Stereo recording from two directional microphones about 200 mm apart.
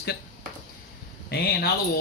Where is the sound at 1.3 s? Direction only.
50° left (ahead or behind).